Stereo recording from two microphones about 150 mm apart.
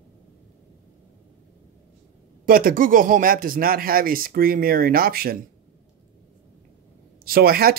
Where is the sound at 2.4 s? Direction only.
70° right (ahead or behind).